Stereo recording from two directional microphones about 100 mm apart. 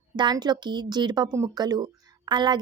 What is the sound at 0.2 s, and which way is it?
A woman's voice, 45° right (ahead or behind).